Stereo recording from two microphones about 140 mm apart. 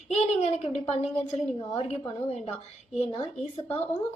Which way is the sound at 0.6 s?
45° left (ahead or behind).